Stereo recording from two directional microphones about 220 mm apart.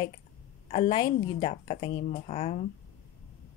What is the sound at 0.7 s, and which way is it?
A woman's voice, 25° left (ahead or behind).